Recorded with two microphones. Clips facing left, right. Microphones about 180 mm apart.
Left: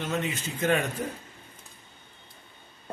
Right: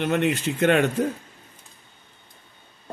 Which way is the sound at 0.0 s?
65° right (ahead or behind).